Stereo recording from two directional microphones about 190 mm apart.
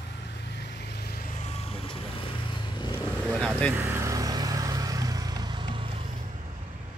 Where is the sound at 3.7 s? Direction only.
15° right (ahead or behind).